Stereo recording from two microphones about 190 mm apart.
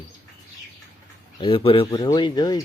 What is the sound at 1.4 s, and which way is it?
Speech, 25° left (ahead or behind).